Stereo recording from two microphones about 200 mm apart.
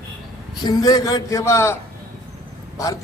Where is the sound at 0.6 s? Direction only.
20° left (ahead or behind).